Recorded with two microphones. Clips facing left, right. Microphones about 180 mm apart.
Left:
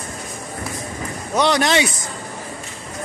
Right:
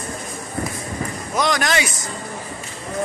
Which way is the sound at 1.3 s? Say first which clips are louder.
Left 4 dB; 30° left (ahead or behind).